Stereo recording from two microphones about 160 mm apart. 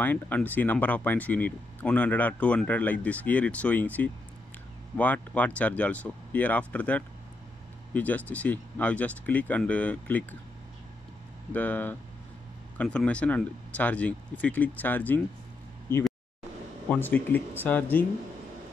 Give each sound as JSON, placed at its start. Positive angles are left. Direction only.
{"t": 0.0, "sound": "speech", "side_deg": 10}
{"t": 11.5, "sound": "speech", "side_deg": 10}